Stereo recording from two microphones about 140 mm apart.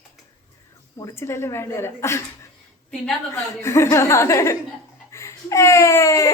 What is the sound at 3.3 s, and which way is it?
A woman's voice, 20° left (ahead or behind).